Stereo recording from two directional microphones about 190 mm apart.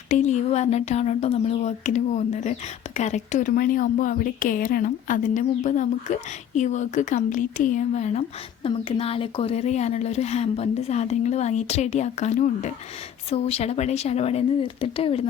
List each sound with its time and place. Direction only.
0.1 s speech: 40° left (ahead or behind)